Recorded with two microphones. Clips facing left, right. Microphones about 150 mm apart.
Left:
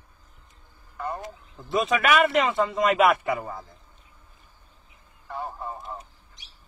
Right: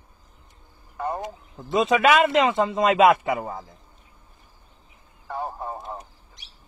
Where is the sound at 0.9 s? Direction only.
25° right (ahead or behind).